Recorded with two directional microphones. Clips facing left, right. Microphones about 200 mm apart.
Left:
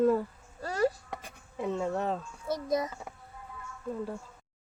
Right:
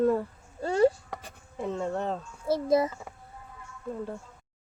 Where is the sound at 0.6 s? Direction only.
25° right (ahead or behind).